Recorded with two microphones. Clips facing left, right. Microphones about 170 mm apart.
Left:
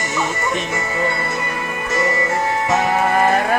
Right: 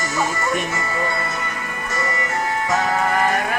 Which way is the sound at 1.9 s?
20° left (ahead or behind).